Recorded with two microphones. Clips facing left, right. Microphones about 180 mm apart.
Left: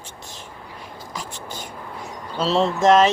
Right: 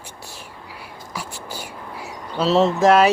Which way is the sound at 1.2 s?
10° right (ahead or behind).